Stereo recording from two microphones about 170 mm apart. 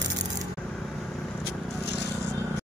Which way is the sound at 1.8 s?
80° left.